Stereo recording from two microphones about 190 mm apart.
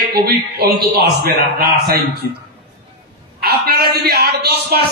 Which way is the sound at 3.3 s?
55° right (ahead or behind).